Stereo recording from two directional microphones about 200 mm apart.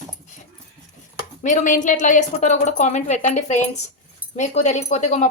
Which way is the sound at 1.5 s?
40° left (ahead or behind).